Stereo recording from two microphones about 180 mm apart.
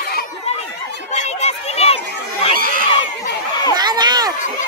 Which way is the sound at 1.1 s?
35° left (ahead or behind).